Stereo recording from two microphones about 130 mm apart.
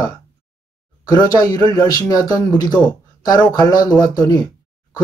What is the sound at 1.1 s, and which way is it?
Speech, 30° left (ahead or behind).